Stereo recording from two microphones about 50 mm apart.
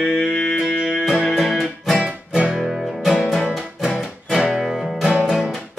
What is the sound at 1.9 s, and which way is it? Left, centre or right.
Music, right.